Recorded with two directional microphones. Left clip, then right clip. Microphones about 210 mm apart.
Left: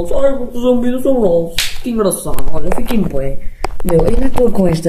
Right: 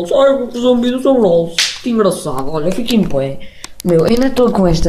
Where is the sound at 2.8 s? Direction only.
15° right (ahead or behind).